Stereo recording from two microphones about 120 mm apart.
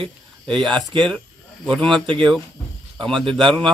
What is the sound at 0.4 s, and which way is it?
Speech, 5° left (ahead or behind).